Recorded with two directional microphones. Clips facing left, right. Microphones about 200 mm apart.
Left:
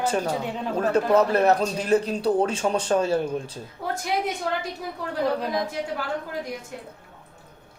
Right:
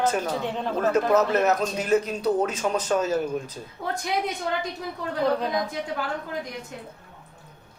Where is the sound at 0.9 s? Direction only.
30° left (ahead or behind).